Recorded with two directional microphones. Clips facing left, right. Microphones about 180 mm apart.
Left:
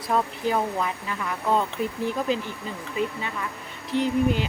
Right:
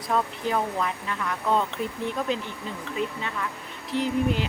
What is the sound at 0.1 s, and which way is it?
Speech, 5° left (ahead or behind).